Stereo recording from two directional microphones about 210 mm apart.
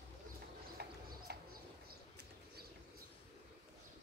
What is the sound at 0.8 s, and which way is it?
Bird, 50° right (ahead or behind).